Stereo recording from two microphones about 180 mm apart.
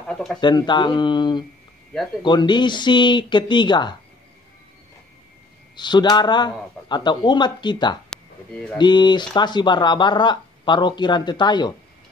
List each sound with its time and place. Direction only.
0.0 s speech: centre (ahead or behind)
0.4 s speech: 25° left (ahead or behind)
5.8 s speech: 25° left (ahead or behind)